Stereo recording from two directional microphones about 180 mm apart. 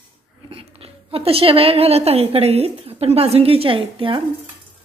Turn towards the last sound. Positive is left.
turn(degrees=-30)  # may be behind; listen again after turning